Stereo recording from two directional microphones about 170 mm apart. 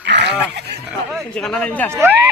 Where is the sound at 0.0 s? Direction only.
85° right.